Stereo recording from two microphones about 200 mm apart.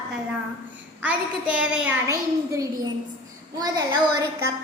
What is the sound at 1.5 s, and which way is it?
Speech, 5° right (ahead or behind).